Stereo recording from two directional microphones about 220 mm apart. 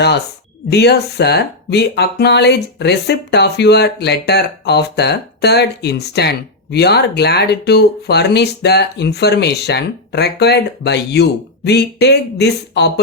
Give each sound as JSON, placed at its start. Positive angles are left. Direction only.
{"t": 0.7, "sound": "speech", "side_deg": 50}